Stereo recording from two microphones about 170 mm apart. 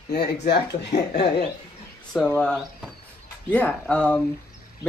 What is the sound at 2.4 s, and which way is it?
A man's voice, 5° left (ahead or behind).